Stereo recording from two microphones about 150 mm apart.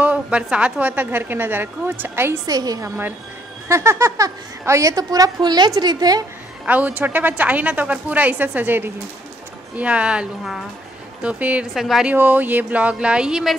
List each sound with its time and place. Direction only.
0.0 s a woman's voice: 10° right (ahead or behind); by 6.2 s 25° right (ahead or behind)
6.6 s a woman's voice: 10° right (ahead or behind)